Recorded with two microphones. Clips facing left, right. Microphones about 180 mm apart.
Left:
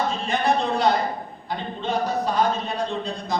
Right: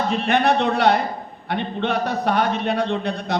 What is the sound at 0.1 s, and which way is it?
A man's voice, 65° right (ahead or behind).